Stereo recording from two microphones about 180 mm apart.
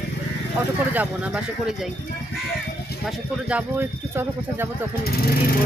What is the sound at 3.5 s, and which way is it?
Speech, 10° right (ahead or behind).